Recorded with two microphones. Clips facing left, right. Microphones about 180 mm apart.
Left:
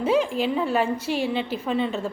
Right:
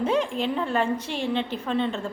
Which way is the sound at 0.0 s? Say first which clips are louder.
Left 2 dB; 5° left (ahead or behind).